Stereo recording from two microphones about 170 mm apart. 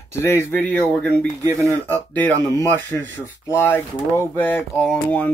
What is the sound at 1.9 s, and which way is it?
Speech, 10° left (ahead or behind).